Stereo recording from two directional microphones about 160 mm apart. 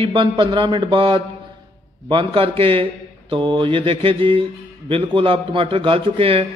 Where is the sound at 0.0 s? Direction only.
30° right (ahead or behind).